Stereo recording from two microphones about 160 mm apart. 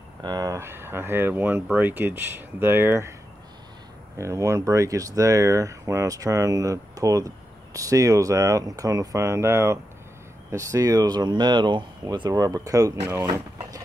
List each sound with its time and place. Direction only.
0.2 s speech: 25° right (ahead or behind)
4.2 s speech: 20° right (ahead or behind)